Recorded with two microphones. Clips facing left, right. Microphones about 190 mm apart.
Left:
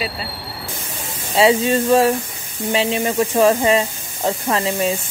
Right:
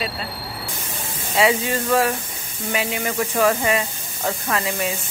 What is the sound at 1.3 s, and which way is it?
A woman's voice, 30° left (ahead or behind).